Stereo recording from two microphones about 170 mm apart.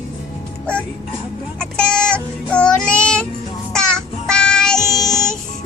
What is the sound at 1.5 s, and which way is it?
Child singing, 5° left (ahead or behind).